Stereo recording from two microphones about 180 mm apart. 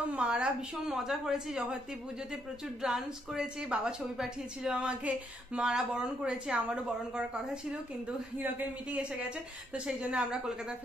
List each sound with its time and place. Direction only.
0.1 s a woman's voice: 5° right (ahead or behind)
2.8 s a woman's voice: 5° right (ahead or behind)
8.4 s a man's voice: 10° right (ahead or behind)